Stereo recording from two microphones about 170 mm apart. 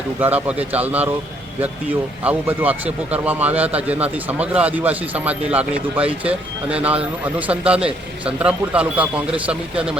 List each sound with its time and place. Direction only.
0.2 s speech: 10° right (ahead or behind)